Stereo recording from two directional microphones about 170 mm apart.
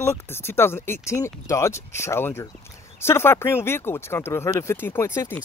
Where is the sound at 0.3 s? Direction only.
15° left (ahead or behind).